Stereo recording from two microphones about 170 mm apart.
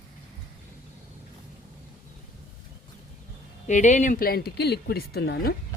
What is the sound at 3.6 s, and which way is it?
Speech, 45° left (ahead or behind).